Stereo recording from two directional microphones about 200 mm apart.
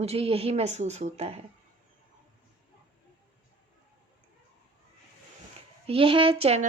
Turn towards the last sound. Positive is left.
turn(degrees=-30)  # may be behind; listen again after turning